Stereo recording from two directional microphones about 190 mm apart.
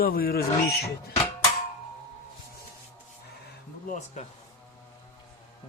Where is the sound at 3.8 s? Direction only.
40° left (ahead or behind).